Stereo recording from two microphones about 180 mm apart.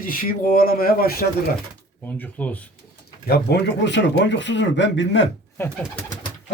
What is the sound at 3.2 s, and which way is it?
Speech, 65° left (ahead or behind).